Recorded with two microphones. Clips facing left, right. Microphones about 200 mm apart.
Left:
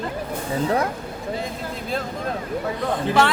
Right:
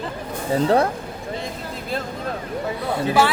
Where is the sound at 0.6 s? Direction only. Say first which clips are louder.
Right 4 dB; 30° right (ahead or behind).